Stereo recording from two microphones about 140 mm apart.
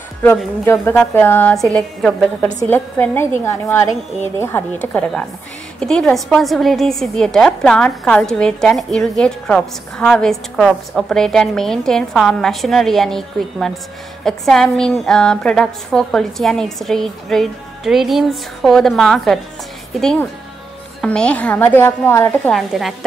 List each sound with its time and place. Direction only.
0.7 s a woman's voice: 15° left (ahead or behind)
2.7 s a woman's voice: 15° left (ahead or behind)
22.5 s a woman's voice: centre (ahead or behind)